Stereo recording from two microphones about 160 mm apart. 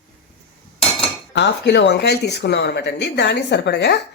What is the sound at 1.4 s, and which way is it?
Speech, 90° left.